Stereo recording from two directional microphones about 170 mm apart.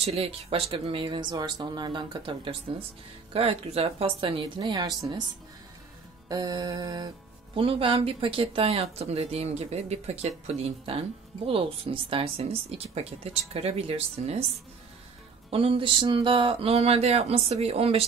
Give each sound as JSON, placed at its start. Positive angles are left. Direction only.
{"t": 0.0, "sound": "speech", "side_deg": -35}
{"t": 6.2, "sound": "mantra", "side_deg": -20}
{"t": 7.5, "sound": "speech", "side_deg": -30}
{"t": 15.5, "sound": "speech", "side_deg": -30}